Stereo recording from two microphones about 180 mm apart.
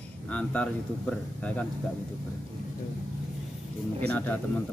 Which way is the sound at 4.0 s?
10° left (ahead or behind).